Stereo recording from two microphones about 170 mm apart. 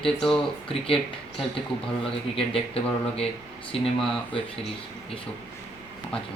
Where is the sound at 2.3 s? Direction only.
35° left (ahead or behind).